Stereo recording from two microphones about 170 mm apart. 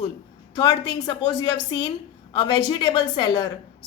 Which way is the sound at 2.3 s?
25° left (ahead or behind).